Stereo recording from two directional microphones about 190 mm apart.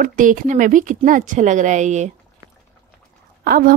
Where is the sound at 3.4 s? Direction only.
50° right (ahead or behind).